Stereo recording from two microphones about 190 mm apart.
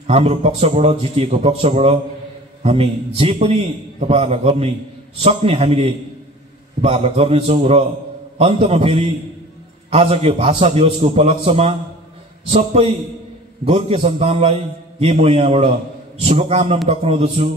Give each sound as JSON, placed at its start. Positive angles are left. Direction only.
{"t": 0.0, "sound": "a man's voice", "side_deg": -30}